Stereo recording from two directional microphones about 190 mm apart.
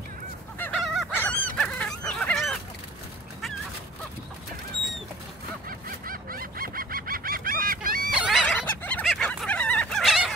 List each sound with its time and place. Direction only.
0.6 s goose: 5° left (ahead or behind)
5.7 s goose: 50° right (ahead or behind)
8.1 s fowl: 5° right (ahead or behind)